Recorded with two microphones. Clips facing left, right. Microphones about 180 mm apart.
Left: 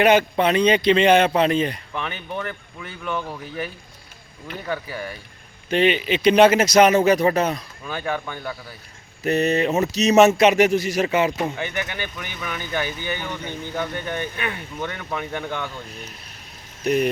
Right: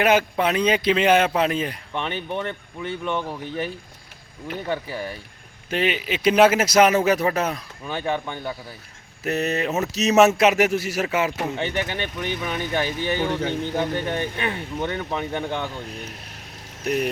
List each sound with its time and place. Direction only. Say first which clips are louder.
0.0 s a man's voice: left 3 dB; 5° right (ahead or behind)
1.9 s speech: right 2 dB; 25° right (ahead or behind)
4.7 s speech: even; 25° right (ahead or behind)
5.7 s speech: left 5 dB; 5° right (ahead or behind)
7.9 s speech: right 1 dB; 20° right (ahead or behind)
9.2 s speech: left 4 dB; 5° right (ahead or behind)
11.5 s speech: right 3 dB; 30° right (ahead or behind)
16.8 s speech: left 3 dB; centre (ahead or behind)